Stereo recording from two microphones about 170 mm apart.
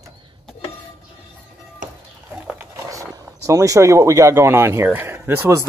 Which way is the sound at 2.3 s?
5° right (ahead or behind).